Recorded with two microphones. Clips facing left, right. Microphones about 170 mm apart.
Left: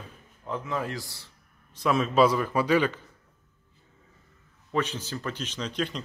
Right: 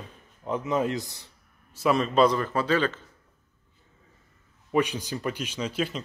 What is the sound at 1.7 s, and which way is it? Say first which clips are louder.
Speech: right 1 dB; centre (ahead or behind).